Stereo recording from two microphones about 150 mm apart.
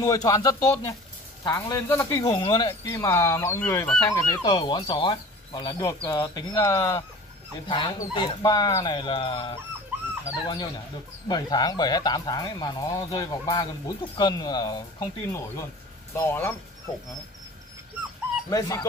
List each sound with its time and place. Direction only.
0.0 s speech: 25° left (ahead or behind)
4.1 s speech: 30° left (ahead or behind)
18.5 s speech: 25° left (ahead or behind)